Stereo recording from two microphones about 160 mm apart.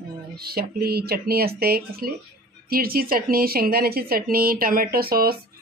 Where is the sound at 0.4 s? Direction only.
75° right (ahead or behind).